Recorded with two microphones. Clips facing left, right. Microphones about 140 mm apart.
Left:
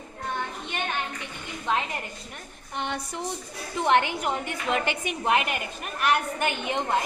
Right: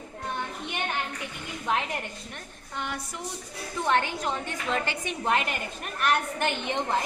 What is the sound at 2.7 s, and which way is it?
A woman's voice, 25° left (ahead or behind).